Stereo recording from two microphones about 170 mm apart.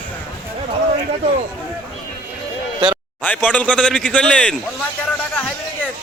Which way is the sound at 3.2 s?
10° left (ahead or behind).